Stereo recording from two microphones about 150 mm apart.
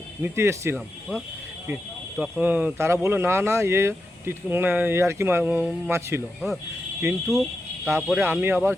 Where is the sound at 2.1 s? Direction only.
10° right (ahead or behind).